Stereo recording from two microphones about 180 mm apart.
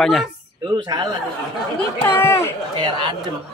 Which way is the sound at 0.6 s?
25° right (ahead or behind).